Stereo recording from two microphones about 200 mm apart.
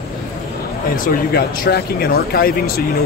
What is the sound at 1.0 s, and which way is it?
Speech, 45° left (ahead or behind).